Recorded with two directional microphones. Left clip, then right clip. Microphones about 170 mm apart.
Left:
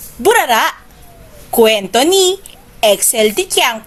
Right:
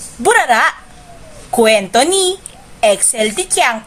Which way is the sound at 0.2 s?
40° left (ahead or behind).